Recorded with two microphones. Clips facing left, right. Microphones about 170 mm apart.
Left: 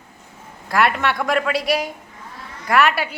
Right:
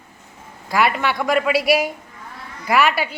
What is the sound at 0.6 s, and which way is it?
Speech, centre (ahead or behind).